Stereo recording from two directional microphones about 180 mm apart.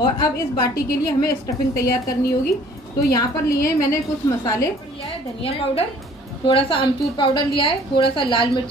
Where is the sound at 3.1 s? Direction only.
20° left (ahead or behind).